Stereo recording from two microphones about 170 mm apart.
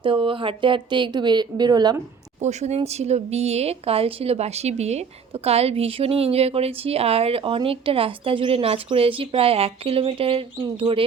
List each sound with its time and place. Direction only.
0.0 s speech: 30° right (ahead or behind)
2.4 s speech: 40° right (ahead or behind)